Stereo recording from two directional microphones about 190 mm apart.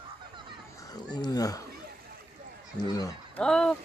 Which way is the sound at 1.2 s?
20° left (ahead or behind).